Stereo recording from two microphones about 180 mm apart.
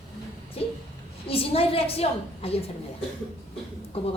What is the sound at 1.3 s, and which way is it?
A woman's voice, 30° left (ahead or behind).